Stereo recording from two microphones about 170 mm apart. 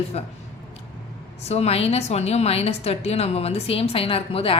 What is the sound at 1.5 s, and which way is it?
A woman's voice, 35° left (ahead or behind).